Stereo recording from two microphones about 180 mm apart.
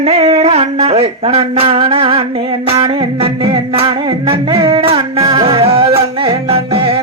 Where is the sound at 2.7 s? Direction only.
30° right (ahead or behind).